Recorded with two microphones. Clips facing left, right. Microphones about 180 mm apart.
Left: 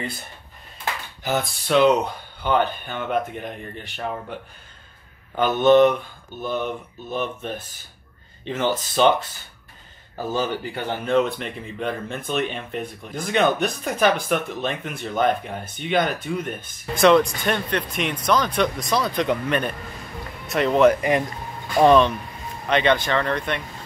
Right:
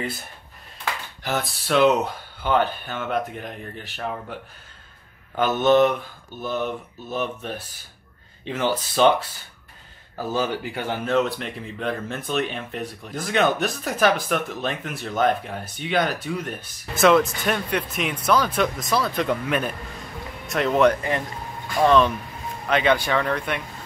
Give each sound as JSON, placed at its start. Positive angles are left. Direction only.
{"t": 1.2, "sound": "speech", "side_deg": 0}
{"t": 20.4, "sound": "speech", "side_deg": 0}
{"t": 20.9, "sound": "speech", "side_deg": 15}
{"t": 22.7, "sound": "speech", "side_deg": -5}